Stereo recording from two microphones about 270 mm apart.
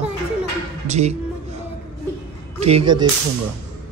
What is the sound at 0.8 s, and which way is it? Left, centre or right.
Speech, right.